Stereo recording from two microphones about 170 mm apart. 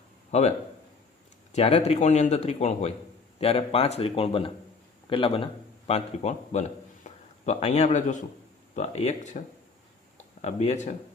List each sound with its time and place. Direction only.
0.3 s speech: 40° left (ahead or behind)
1.5 s a man's voice: 40° left (ahead or behind)
10.4 s speech: 40° left (ahead or behind)